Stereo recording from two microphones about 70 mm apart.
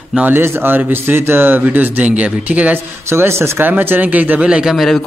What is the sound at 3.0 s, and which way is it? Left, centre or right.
Speech, right.